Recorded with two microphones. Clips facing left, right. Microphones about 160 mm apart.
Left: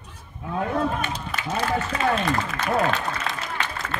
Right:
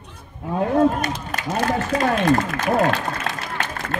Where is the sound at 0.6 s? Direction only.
40° right (ahead or behind).